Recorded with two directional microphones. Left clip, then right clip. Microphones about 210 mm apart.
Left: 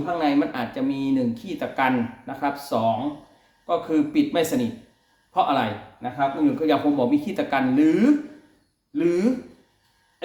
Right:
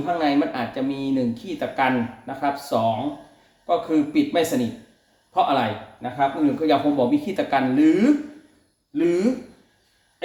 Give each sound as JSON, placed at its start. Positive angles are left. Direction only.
{"t": 0.0, "sound": "a man's voice", "side_deg": 15}